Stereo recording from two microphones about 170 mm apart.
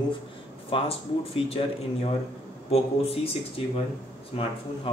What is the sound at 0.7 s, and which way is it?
Speech, 30° left (ahead or behind).